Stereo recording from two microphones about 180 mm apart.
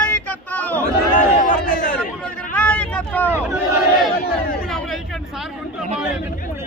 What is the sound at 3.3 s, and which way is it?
Crowd, 10° right (ahead or behind).